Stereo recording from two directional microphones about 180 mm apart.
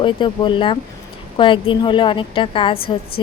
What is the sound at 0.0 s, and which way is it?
A woman's voice, 25° left (ahead or behind).